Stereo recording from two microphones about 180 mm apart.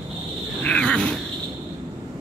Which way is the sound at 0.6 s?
5° left (ahead or behind).